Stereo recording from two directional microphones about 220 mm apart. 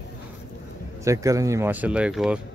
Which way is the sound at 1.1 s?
15° right (ahead or behind).